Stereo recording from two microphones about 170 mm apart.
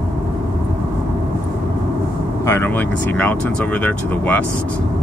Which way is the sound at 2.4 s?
10° left (ahead or behind).